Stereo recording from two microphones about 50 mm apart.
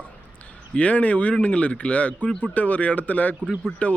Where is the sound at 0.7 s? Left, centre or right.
Left.